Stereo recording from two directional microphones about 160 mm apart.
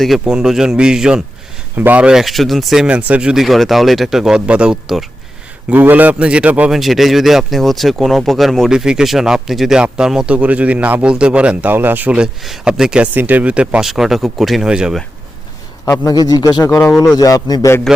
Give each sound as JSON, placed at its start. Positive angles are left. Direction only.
{"t": 0.0, "sound": "a man's voice", "side_deg": -5}
{"t": 15.9, "sound": "speech", "side_deg": 20}